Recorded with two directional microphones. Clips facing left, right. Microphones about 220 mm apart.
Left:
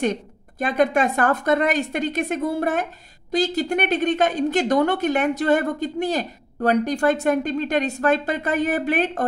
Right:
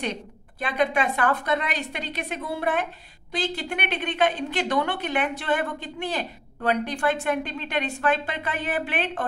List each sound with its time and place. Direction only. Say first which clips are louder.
0.0 s a woman's voice: left 7 dB; 45° left (ahead or behind)